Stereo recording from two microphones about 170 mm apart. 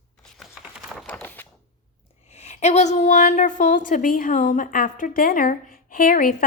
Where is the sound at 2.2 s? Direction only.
40° left (ahead or behind).